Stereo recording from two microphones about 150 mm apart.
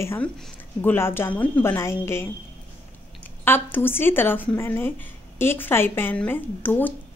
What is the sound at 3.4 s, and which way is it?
A woman's voice, 15° left (ahead or behind).